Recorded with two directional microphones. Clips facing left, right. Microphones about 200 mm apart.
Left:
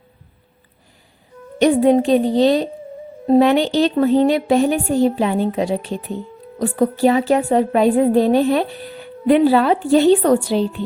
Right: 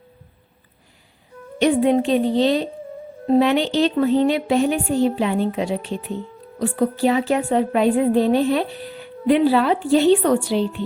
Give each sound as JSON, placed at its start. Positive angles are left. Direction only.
{"t": 1.5, "sound": "a woman's voice", "side_deg": 40}